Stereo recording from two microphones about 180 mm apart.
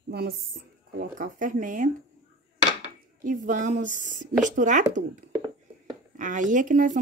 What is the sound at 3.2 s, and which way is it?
Speech, 45° right (ahead or behind).